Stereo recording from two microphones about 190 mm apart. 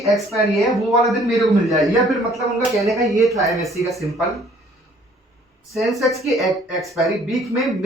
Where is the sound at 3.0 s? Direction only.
15° right (ahead or behind).